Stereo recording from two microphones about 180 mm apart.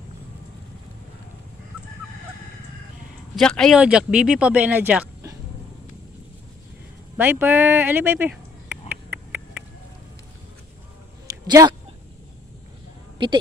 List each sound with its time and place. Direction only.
3.3 s speech: 5° left (ahead or behind); by 5.4 s 15° right (ahead or behind)
7.2 s speech: 10° right (ahead or behind)
8.9 s a sound: 10° right (ahead or behind)
11.4 s speech: 20° right (ahead or behind)